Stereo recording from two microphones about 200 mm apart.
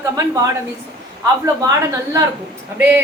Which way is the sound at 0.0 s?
15° right (ahead or behind).